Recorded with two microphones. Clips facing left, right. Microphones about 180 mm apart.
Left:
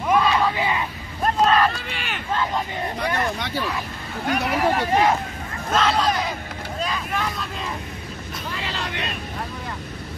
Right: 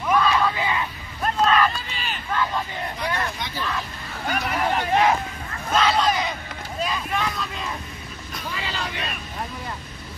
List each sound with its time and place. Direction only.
0.1 s crowd: 25° left (ahead or behind)
1.2 s a sound: 35° left (ahead or behind)
1.7 s run: 65° left (ahead or behind)
2.3 s hubbub: 20° left (ahead or behind)
3.0 s speech: 65° left (ahead or behind)
4.3 s speech: centre (ahead or behind)
8.5 s vehicle: centre (ahead or behind)